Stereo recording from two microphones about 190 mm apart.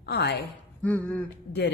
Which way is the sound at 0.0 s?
60° left (ahead or behind).